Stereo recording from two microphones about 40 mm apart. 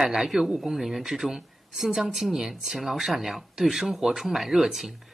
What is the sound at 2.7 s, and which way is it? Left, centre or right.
Speech, centre.